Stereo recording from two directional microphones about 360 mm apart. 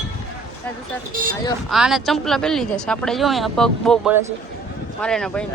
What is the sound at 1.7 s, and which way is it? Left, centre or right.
Speech, centre.